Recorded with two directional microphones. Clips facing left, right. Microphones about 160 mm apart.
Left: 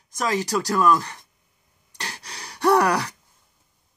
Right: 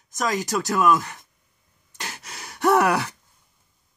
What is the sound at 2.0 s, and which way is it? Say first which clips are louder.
Gasp: even; 5° right (ahead or behind).